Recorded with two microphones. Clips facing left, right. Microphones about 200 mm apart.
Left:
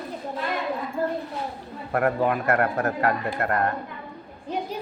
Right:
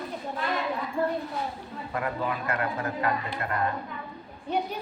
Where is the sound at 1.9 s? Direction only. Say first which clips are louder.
Left 8 dB; 65° left (ahead or behind).